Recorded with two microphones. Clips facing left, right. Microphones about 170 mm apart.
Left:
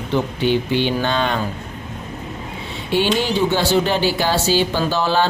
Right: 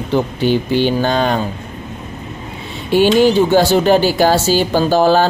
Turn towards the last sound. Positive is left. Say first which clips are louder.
# right 7 dB
turn(degrees=-45)  # may be behind; listen again after turning